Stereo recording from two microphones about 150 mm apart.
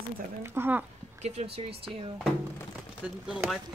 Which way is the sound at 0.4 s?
15° right (ahead or behind).